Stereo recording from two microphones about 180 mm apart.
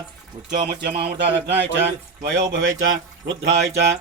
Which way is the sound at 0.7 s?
60° right (ahead or behind).